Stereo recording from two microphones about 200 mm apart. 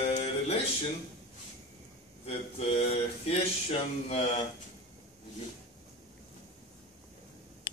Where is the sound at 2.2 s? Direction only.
30° left (ahead or behind).